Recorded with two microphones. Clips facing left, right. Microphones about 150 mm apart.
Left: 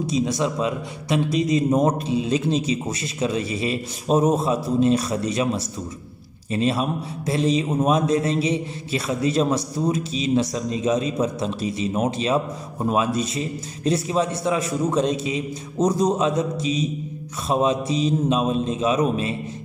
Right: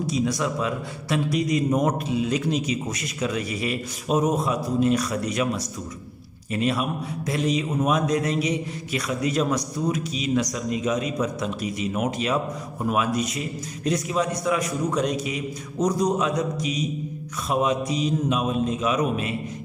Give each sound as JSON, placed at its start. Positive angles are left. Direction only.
{"t": 0.0, "sound": "a man's voice", "side_deg": 25}
{"t": 6.5, "sound": "a man's voice", "side_deg": 30}